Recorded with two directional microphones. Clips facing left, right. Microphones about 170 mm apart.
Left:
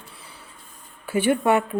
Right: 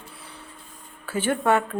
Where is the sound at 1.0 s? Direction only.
15° left (ahead or behind).